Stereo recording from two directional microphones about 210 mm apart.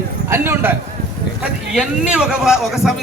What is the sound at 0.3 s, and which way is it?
Speech, 10° right (ahead or behind).